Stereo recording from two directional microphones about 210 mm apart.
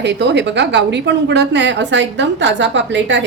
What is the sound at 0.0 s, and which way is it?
A woman's voice, 55° right (ahead or behind).